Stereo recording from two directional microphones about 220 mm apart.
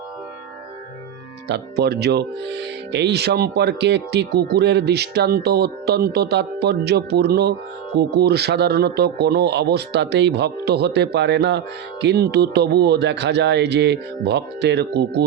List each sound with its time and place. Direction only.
1.5 s speech: 50° right (ahead or behind)